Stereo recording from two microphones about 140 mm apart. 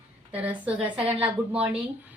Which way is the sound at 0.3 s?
10° right (ahead or behind).